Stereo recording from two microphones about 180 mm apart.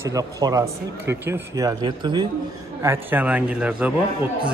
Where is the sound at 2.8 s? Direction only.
10° right (ahead or behind).